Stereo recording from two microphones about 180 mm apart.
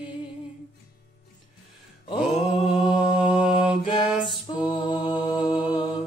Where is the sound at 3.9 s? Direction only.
25° left (ahead or behind).